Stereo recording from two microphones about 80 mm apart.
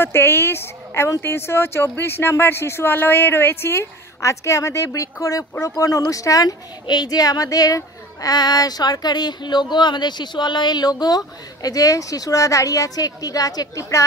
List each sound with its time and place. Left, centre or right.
0.0 s speech: left